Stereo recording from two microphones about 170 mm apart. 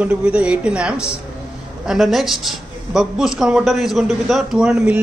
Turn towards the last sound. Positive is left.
turn(degrees=-5)  # may be behind; listen again after turning